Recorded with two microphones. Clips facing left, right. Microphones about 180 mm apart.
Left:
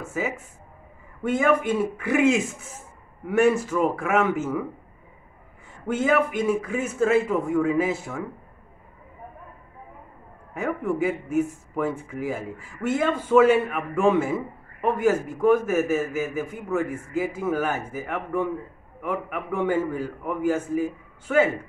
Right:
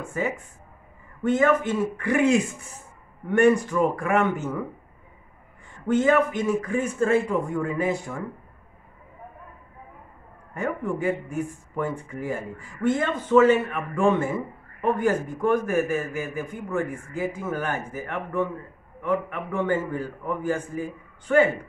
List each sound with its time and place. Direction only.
0.0 s a man's voice: 5° left (ahead or behind)
5.8 s a man's voice: 10° left (ahead or behind)
10.5 s a man's voice: 5° left (ahead or behind)